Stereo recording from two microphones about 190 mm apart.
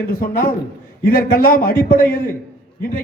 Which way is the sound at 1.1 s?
50° left (ahead or behind).